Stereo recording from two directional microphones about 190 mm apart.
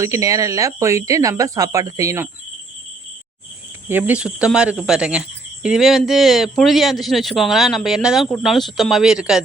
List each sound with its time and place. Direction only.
0.0 s speech: 15° right (ahead or behind)
3.8 s speech: 10° right (ahead or behind)